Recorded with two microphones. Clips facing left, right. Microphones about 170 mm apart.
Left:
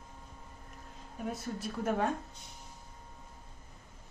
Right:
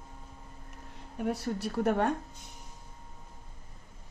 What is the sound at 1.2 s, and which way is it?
Speech, 70° right (ahead or behind).